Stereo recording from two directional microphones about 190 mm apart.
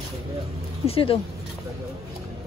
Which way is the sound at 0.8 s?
30° left (ahead or behind).